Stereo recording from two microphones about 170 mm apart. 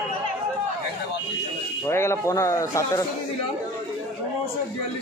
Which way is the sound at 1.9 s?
15° left (ahead or behind).